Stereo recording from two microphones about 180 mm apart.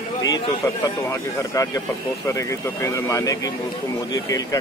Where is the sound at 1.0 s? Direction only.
20° left (ahead or behind).